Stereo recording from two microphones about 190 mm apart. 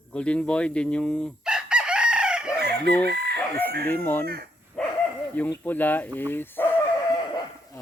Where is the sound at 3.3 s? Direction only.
10° left (ahead or behind).